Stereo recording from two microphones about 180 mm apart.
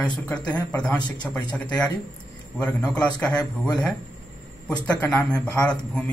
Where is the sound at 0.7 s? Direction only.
10° left (ahead or behind).